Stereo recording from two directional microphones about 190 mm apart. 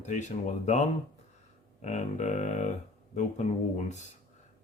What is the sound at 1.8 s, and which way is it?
Speech, 35° left (ahead or behind).